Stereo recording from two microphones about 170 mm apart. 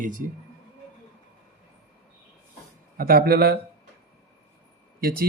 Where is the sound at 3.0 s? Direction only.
60° right (ahead or behind).